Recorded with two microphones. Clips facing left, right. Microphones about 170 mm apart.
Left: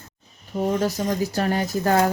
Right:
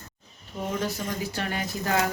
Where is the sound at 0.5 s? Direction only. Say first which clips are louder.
Left 7 dB; 40° left (ahead or behind).